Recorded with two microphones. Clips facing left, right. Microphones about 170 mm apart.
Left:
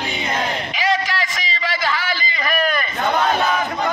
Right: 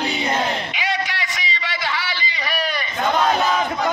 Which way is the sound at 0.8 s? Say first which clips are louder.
Left 4 dB; 45° left (ahead or behind).